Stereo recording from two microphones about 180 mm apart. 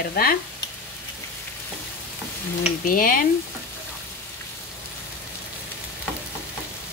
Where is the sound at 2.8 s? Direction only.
50° left (ahead or behind).